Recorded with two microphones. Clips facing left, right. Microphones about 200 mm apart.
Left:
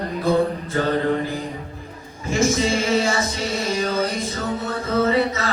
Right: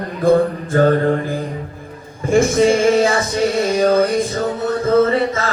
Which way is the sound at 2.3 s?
55° right (ahead or behind).